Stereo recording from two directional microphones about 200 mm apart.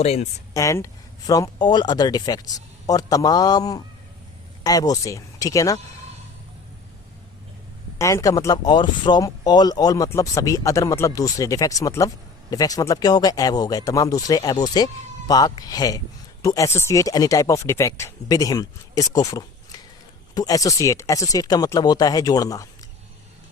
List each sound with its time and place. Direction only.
0.0 s speech: 30° left (ahead or behind)
0.5 s speech: 15° left (ahead or behind)
7.9 s speech: 15° left (ahead or behind)